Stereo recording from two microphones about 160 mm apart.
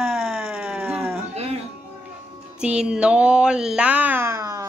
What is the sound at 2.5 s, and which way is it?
Speech, 5° right (ahead or behind).